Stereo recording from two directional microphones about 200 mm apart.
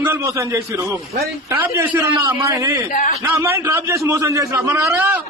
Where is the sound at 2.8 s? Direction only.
40° left (ahead or behind).